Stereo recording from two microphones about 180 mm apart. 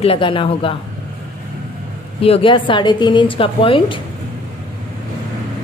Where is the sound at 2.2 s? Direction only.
30° left (ahead or behind).